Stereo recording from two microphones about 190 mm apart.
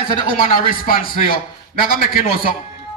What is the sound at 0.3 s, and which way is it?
A man's voice, 45° left (ahead or behind).